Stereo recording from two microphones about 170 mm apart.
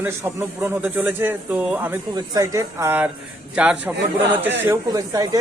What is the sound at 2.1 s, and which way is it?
Speech, 20° right (ahead or behind).